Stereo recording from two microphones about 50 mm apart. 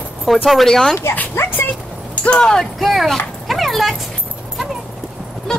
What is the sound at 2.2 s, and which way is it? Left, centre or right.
Speech, centre.